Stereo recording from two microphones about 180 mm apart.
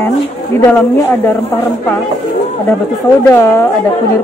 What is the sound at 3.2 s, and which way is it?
Speech, 15° left (ahead or behind).